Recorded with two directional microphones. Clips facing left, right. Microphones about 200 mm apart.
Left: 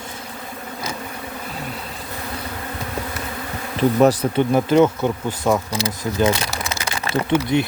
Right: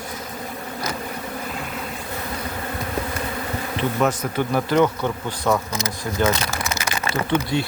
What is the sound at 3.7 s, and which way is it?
Bee, 35° left (ahead or behind).